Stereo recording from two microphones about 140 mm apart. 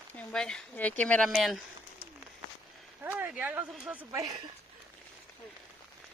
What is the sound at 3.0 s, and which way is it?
Speech, 10° right (ahead or behind).